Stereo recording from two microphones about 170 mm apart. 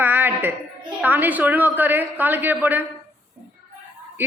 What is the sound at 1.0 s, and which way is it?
A woman's voice, 10° right (ahead or behind).